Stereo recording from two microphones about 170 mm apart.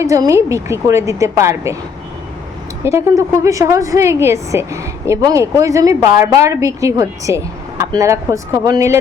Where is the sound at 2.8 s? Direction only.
15° right (ahead or behind).